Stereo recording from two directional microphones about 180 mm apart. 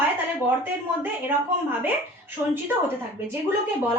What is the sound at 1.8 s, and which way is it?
Speech, 10° right (ahead or behind).